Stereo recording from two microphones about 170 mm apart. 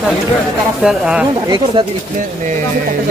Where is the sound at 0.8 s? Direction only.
5° right (ahead or behind).